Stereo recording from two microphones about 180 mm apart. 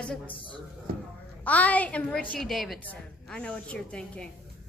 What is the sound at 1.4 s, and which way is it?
A woman's voice, 10° left (ahead or behind).